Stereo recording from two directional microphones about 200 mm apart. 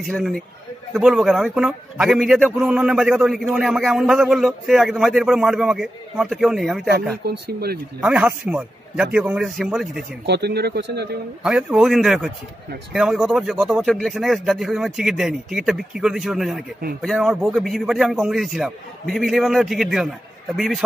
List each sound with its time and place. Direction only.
0.0 s a man's voice: centre (ahead or behind)
7.2 s speech: 50° right (ahead or behind)
8.0 s a man's voice: 5° right (ahead or behind)
10.2 s speech: 55° right (ahead or behind)
11.4 s a man's voice: 5° right (ahead or behind)